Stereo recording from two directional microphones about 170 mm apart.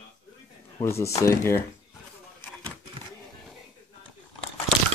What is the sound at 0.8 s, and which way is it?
Speech, 15° left (ahead or behind).